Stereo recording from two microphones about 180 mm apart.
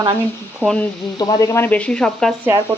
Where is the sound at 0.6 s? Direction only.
5° left (ahead or behind).